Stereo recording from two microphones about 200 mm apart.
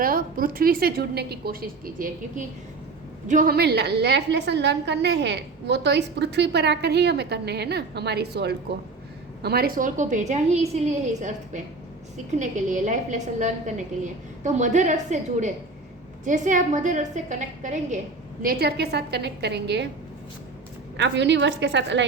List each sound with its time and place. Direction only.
0.0 s a woman's voice: 45° right (ahead or behind)
18.4 s a woman's voice: 55° right (ahead or behind)
20.9 s a woman's voice: 60° right (ahead or behind)